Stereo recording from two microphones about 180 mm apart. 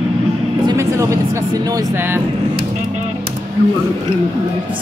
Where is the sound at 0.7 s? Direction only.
15° right (ahead or behind).